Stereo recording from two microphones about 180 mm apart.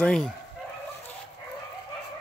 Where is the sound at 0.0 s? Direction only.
5° left (ahead or behind).